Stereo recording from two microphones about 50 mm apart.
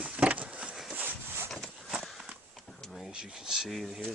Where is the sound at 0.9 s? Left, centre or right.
Right.